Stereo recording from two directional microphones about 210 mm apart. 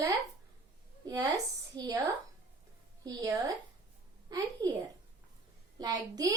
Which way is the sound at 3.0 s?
15° right (ahead or behind).